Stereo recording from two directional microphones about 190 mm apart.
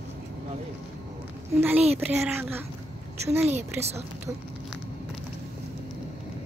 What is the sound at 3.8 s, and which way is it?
Speech, 35° right (ahead or behind).